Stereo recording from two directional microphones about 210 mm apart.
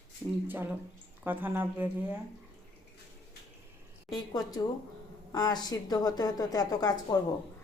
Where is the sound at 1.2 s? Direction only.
10° right (ahead or behind).